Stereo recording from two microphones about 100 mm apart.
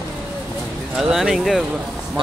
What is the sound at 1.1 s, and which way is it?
Speech, 5° right (ahead or behind).